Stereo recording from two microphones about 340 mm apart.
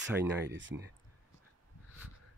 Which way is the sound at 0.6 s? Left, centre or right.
Right.